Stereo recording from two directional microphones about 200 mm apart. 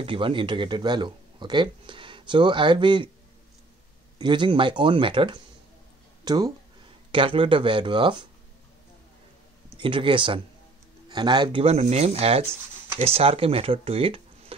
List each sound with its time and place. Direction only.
0.0 s speech: 25° right (ahead or behind)
4.2 s speech: 25° right (ahead or behind)
9.8 s speech: 25° right (ahead or behind)